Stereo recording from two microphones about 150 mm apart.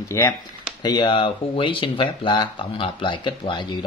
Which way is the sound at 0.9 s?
30° left (ahead or behind).